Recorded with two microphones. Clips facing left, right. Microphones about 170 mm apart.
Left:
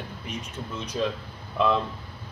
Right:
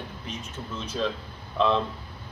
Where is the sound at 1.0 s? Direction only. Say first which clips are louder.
Left 1 dB; 10° left (ahead or behind).